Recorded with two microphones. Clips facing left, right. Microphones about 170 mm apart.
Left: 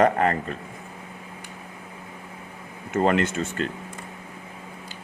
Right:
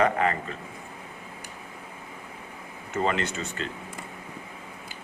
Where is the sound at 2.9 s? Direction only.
55° left (ahead or behind).